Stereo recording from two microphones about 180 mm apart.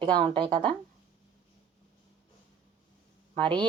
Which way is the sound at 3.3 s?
25° right (ahead or behind).